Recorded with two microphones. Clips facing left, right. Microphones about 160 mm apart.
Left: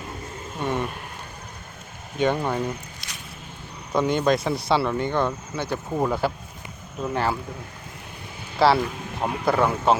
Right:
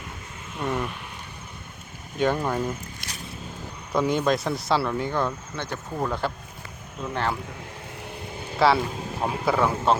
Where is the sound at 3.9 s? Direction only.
Centre (ahead or behind).